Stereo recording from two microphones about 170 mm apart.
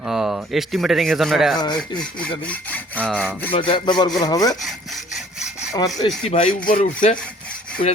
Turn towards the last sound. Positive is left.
turn(degrees=45)  # may be behind; listen again after turning